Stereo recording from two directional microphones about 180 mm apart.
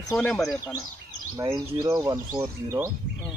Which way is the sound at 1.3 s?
15° right (ahead or behind).